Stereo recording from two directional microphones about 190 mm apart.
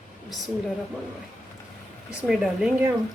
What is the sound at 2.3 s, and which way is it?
Speech, 5° right (ahead or behind).